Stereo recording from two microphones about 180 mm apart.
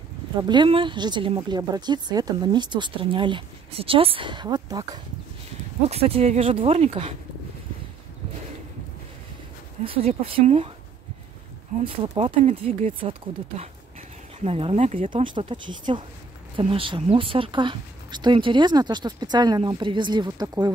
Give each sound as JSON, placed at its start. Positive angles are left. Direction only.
{"t": 0.4, "sound": "speech", "side_deg": -25}
{"t": 5.9, "sound": "speech", "side_deg": -35}
{"t": 9.8, "sound": "speech", "side_deg": -30}
{"t": 12.2, "sound": "speech", "side_deg": -30}